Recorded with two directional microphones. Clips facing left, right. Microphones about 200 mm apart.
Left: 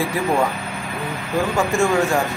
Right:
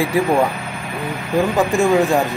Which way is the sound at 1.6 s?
15° right (ahead or behind).